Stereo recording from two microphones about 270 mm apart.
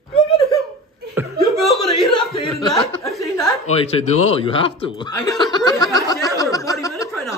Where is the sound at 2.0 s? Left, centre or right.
Centre.